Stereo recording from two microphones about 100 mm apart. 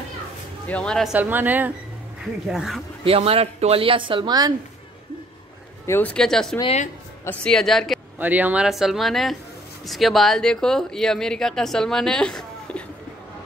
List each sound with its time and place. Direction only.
0.7 s speech: 10° left (ahead or behind)
1.1 s speech: 20° right (ahead or behind)
2.4 s speech: 5° right (ahead or behind)
3.0 s speech: 80° right; by 4.3 s 60° right (ahead or behind)
4.3 s a woman's voice: 40° right (ahead or behind)
5.9 s speech: 20° left (ahead or behind)
6.1 s speech: 5° left (ahead or behind)
8.2 s speech: 15° right (ahead or behind)
8.6 s speech: 5° right (ahead or behind)